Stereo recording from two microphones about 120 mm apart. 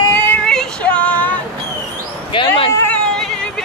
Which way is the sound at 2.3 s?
45° left (ahead or behind).